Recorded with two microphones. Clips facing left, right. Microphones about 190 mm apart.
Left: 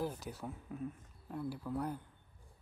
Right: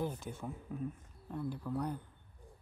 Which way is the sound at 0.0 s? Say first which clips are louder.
Right 1 dB; 5° left (ahead or behind).